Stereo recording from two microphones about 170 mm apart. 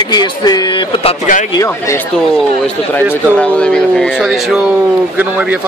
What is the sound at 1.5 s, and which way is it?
Speech, 15° left (ahead or behind).